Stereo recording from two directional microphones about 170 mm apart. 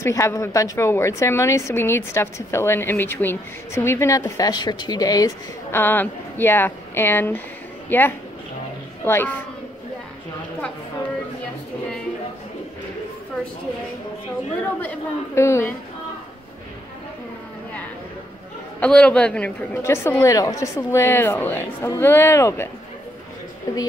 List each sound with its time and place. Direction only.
0.0 s a woman's voice: 15° left (ahead or behind)
14.8 s a woman's voice: 10° left (ahead or behind)
18.8 s a woman's voice: 5° left (ahead or behind)